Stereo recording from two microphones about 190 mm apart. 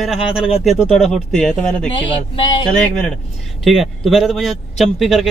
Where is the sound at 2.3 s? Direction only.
25° left (ahead or behind).